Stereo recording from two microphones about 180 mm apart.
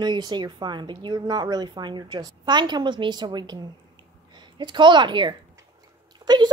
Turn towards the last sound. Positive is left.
turn(degrees=-25)  # may be behind; listen again after turning